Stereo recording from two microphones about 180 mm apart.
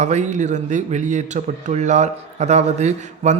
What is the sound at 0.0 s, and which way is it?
Speech, 40° right (ahead or behind).